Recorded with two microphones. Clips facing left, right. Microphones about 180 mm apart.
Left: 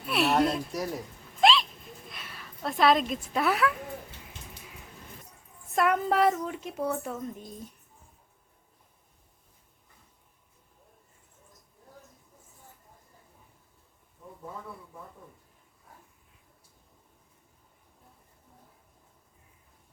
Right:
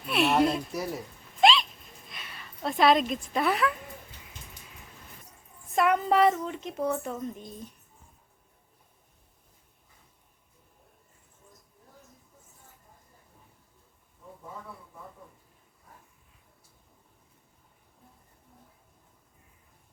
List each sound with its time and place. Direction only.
0.1 s a woman's voice: centre (ahead or behind)
5.7 s a woman's voice: centre (ahead or behind)